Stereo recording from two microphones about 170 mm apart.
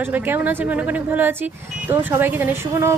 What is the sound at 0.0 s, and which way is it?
A woman's voice, 10° right (ahead or behind).